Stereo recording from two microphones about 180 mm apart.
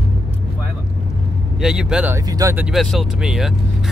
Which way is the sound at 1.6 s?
5° right (ahead or behind).